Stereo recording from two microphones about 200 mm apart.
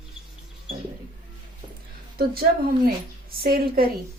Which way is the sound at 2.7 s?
50° right (ahead or behind).